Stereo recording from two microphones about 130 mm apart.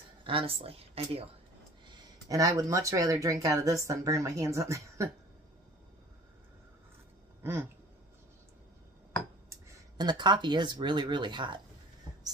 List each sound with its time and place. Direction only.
0.2 s speech: 45° right (ahead or behind)
1.9 s speech: 30° right (ahead or behind)
9.9 s speech: 35° right (ahead or behind)